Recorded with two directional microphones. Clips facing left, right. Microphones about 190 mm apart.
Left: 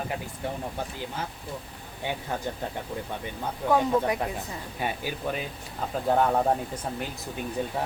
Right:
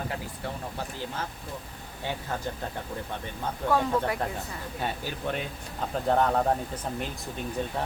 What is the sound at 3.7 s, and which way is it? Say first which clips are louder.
Speech: left 3 dB; 15° left (ahead or behind).